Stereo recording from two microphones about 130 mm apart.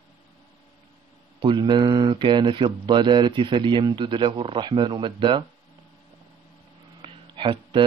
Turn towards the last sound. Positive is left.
turn(degrees=-40)  # may be behind; listen again after turning